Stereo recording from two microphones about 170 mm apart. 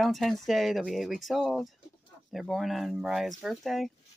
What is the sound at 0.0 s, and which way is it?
Speech, centre (ahead or behind).